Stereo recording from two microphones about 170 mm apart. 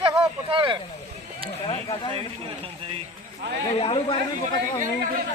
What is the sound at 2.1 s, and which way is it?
Speech, 35° right (ahead or behind).